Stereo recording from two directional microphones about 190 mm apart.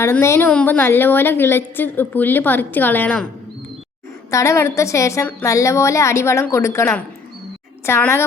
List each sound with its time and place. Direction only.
0.0 s a woman's voice: 15° left (ahead or behind)
4.3 s a woman's voice: 15° left (ahead or behind)